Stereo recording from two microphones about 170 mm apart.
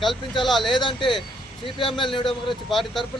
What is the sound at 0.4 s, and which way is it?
Speech, centre (ahead or behind).